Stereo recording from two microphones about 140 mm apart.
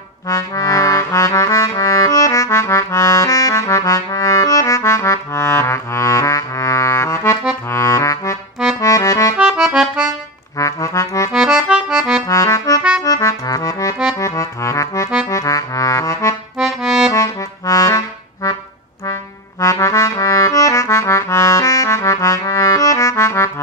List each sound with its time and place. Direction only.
0.3 s music: 20° left (ahead or behind)
7.7 s accordion: 20° left (ahead or behind)
9.4 s accordion: 5° right (ahead or behind)
10.6 s accordion: 20° left (ahead or behind)
11.3 s accordion: 5° right (ahead or behind)
12.3 s accordion: 20° left (ahead or behind)
15.2 s music: 25° left (ahead or behind)
16.5 s accordion: 5° right (ahead or behind)
17.1 s music: 20° left (ahead or behind)
19.6 s accordion: 20° left (ahead or behind)